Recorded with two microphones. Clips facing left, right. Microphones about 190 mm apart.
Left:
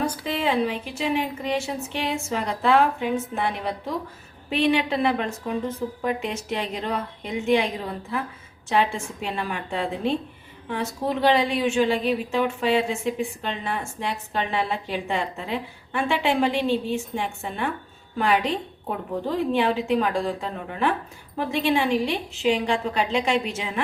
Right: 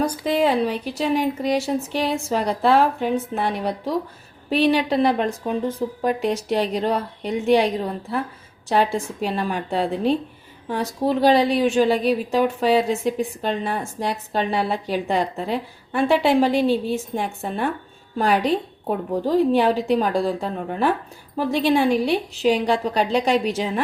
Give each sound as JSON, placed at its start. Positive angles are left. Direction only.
{"t": 0.0, "sound": "a woman's voice", "side_deg": -40}
{"t": 8.7, "sound": "a woman's voice", "side_deg": -35}